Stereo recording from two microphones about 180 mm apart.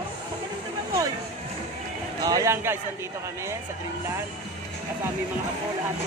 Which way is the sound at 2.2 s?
20° right (ahead or behind).